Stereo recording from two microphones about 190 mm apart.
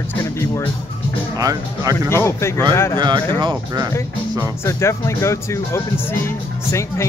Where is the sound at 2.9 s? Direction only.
25° right (ahead or behind).